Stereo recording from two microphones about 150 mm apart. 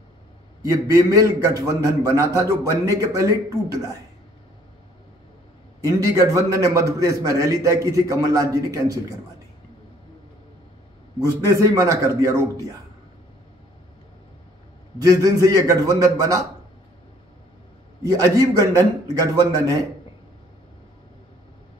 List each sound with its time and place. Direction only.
0.6 s a man's voice: 20° right (ahead or behind)
6.1 s a man's voice: 20° right (ahead or behind)
11.4 s a man's voice: 20° right (ahead or behind)
15.0 s a man's voice: 25° right (ahead or behind)
18.0 s a man's voice: 25° right (ahead or behind)